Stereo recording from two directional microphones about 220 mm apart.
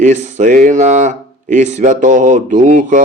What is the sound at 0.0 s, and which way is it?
Speech, 35° right (ahead or behind).